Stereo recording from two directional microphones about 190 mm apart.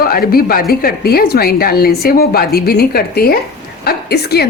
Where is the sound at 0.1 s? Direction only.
50° left (ahead or behind).